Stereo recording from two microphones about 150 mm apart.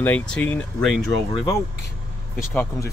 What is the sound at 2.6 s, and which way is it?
Speech, 20° left (ahead or behind).